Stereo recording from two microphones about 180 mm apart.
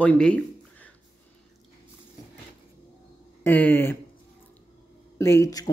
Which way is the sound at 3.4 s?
10° left (ahead or behind).